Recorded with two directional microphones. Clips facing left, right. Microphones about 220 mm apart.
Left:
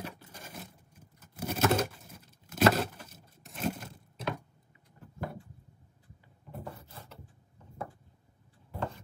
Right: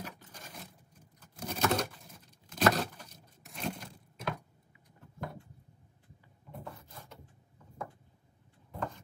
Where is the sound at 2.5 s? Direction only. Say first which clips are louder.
Left 3 dB; 5° left (ahead or behind).